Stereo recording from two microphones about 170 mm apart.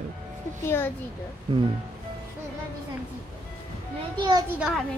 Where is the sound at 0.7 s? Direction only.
15° left (ahead or behind).